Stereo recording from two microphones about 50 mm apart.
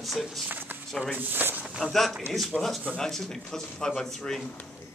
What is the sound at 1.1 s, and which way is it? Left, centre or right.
Speech, right.